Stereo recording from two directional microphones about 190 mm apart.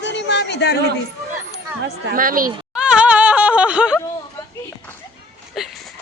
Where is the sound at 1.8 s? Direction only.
50° right (ahead or behind).